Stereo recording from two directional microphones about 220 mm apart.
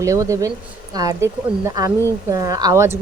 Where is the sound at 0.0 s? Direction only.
15° right (ahead or behind).